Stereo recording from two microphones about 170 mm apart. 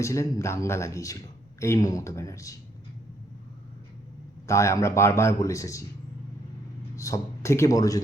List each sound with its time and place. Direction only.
0.0 s speech: 15° left (ahead or behind)
4.4 s speech: 15° left (ahead or behind)
6.9 s speech: 20° left (ahead or behind)